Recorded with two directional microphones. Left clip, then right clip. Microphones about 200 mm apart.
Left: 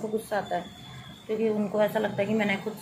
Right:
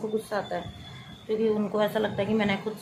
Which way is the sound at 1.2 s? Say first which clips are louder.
Right 1 dB; 15° right (ahead or behind).